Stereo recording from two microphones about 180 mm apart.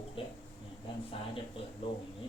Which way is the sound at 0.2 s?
30° left (ahead or behind).